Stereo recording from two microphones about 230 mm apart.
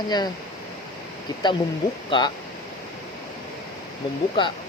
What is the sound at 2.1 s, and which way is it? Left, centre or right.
Speech, centre.